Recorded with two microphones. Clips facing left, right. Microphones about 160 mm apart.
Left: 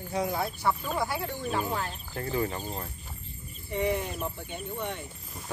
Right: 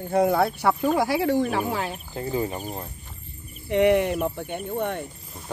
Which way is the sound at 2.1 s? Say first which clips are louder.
Right 2 dB; 20° right (ahead or behind).